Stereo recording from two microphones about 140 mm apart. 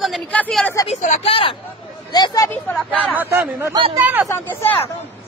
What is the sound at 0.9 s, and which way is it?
Speech, 55° left (ahead or behind).